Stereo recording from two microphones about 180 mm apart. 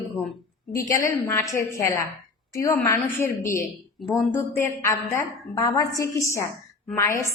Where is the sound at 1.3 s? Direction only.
15° left (ahead or behind).